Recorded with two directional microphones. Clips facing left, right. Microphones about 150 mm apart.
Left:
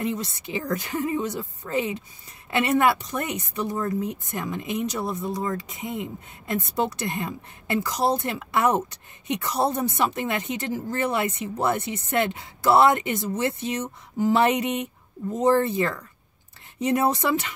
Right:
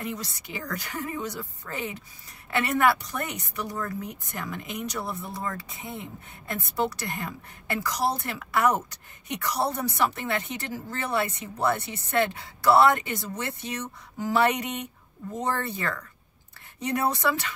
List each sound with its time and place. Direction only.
0.0 s speech: 20° left (ahead or behind)